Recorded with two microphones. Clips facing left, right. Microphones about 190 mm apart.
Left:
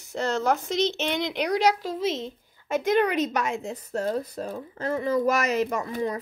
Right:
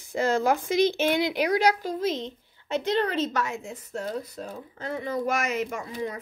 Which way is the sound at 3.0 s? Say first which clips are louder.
Left 2 dB; 15° left (ahead or behind).